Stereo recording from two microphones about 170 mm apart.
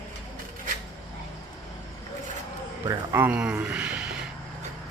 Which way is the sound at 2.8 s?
15° right (ahead or behind).